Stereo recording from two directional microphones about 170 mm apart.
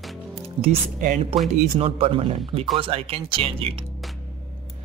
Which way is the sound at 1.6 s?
35° right (ahead or behind).